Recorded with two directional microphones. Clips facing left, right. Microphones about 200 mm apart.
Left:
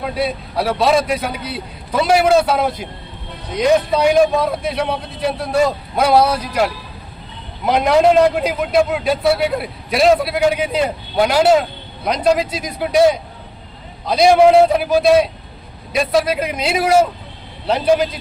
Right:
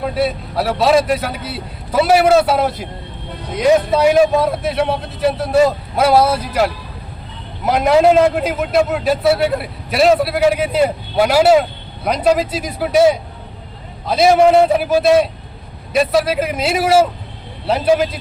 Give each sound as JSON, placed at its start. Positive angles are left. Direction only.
{"t": 0.1, "sound": "a man's voice", "side_deg": 0}